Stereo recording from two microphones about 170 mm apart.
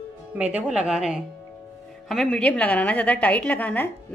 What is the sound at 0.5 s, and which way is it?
A woman's voice, 5° right (ahead or behind).